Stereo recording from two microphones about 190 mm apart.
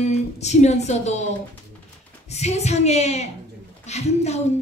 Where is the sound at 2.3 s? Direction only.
35° left (ahead or behind).